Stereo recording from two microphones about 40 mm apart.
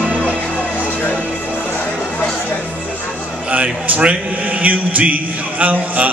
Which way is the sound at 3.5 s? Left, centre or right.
Right.